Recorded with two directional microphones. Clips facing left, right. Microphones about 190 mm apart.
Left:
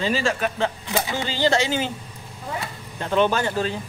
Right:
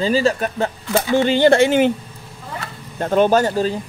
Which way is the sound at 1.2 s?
60° right (ahead or behind).